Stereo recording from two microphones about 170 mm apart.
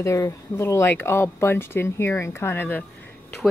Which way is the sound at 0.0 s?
15° left (ahead or behind).